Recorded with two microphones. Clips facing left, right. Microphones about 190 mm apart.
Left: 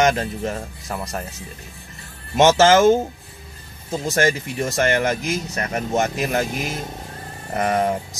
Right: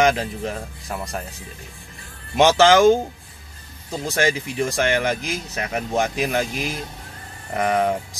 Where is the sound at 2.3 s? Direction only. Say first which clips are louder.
Left 1 dB; centre (ahead or behind).